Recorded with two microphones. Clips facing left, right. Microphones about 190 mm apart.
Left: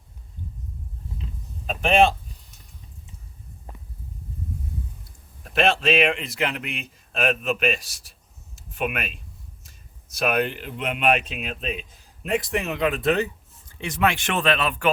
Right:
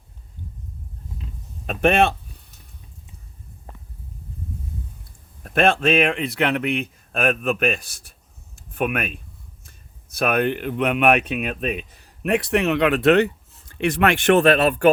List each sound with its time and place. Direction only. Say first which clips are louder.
1.6 s speech: right 1 dB; 65° right (ahead or behind)
5.4 s speech: right 3 dB; 50° right (ahead or behind)
8.5 s a sound: right 4 dB; 55° right (ahead or behind)
9.6 s speech: right 1 dB; 55° right (ahead or behind)